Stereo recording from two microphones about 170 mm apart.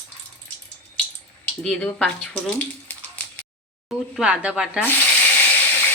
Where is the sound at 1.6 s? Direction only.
5° left (ahead or behind).